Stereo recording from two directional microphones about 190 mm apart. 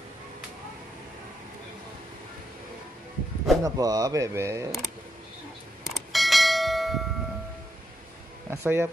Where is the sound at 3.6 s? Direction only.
20° right (ahead or behind).